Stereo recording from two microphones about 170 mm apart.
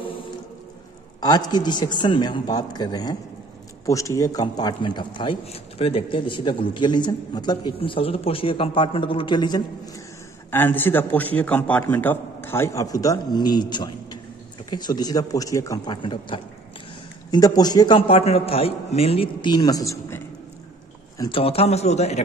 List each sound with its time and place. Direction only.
1.2 s a man's voice: 25° left (ahead or behind)
10.5 s a man's voice: 10° left (ahead or behind)
21.2 s a man's voice: 30° left (ahead or behind)